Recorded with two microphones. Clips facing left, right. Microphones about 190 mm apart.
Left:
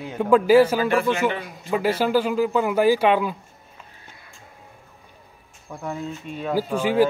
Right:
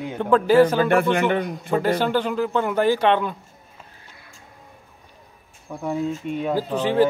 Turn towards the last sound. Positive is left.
turn(degrees=10)  # may be behind; listen again after turning